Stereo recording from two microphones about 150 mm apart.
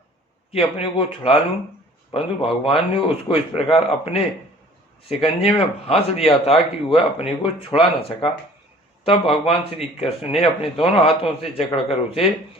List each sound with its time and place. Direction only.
0.5 s speech: 35° left (ahead or behind)